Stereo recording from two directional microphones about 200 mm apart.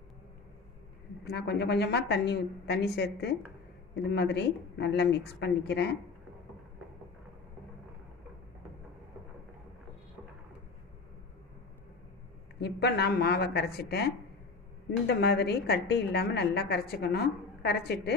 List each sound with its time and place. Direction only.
1.2 s a woman's voice: 55° left (ahead or behind)
12.5 s a woman's voice: 55° left (ahead or behind)